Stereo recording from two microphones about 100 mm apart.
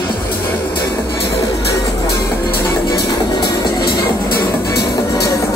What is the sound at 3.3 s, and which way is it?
Music, 45° left (ahead or behind).